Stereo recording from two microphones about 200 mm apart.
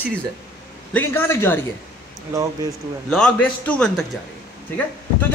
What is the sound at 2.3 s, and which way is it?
Speech, 15° right (ahead or behind).